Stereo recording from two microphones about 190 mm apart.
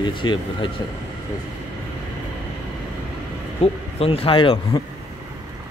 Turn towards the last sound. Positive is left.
turn(degrees=25)  # may be behind; listen again after turning